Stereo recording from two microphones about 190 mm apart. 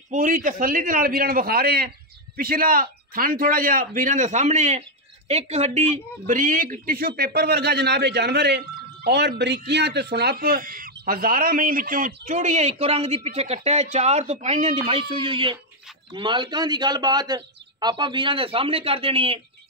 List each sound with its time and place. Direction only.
0.1 s a woman's voice: 45° right (ahead or behind)